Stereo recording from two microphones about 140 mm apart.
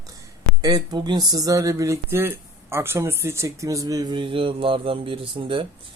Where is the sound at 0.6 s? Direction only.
30° right (ahead or behind).